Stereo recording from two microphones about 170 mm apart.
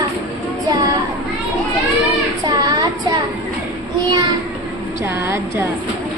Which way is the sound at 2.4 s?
20° right (ahead or behind).